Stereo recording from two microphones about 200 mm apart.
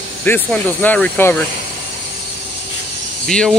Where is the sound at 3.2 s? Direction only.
5° left (ahead or behind).